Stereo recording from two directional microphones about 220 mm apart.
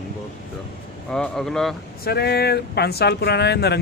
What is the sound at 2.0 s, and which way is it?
Speech, 45° left (ahead or behind).